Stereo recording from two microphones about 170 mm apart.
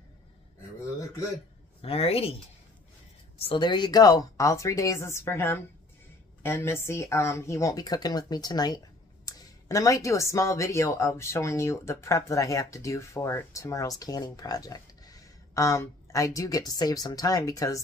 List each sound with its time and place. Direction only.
1.8 s speech: 35° left (ahead or behind)
3.3 s speech: 30° left (ahead or behind)